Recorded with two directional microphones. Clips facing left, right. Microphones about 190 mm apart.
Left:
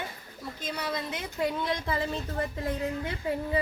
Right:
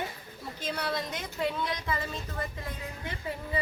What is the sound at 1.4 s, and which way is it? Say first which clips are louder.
Speech: left 2 dB; 20° left (ahead or behind).